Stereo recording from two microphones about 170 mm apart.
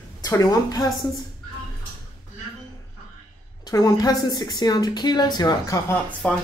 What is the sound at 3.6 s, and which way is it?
Speech, 20° left (ahead or behind).